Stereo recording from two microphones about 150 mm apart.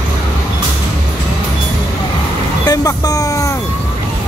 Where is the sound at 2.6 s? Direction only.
25° left (ahead or behind).